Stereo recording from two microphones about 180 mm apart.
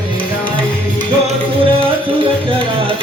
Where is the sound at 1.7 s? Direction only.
30° right (ahead or behind).